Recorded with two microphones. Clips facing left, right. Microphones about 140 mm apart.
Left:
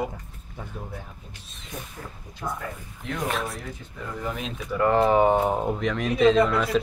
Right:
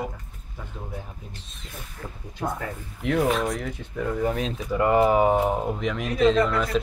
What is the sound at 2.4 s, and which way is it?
Speech, 65° right (ahead or behind).